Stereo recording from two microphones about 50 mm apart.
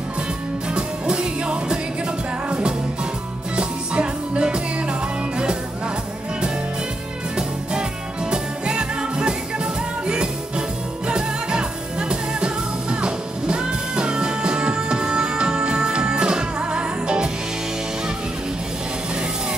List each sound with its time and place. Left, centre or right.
0.7 s music: centre
3.5 s music: right
8.3 s music: centre